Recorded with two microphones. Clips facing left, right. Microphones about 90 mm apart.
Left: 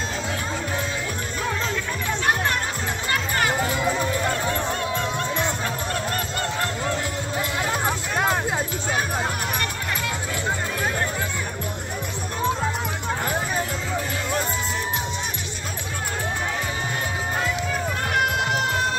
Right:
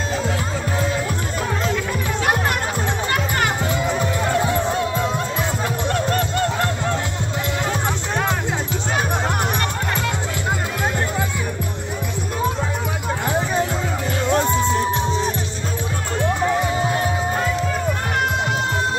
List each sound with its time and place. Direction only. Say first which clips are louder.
3.1 s music: even; 25° right (ahead or behind)
4.5 s music: right 4 dB; 10° right (ahead or behind)
14.3 s music: right 10 dB; 35° right (ahead or behind)